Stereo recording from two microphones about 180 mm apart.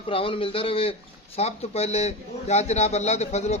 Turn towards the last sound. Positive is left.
turn(degrees=40)  # may be behind; listen again after turning